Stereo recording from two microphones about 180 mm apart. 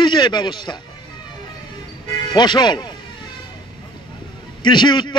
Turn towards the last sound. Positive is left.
turn(degrees=25)  # may be behind; listen again after turning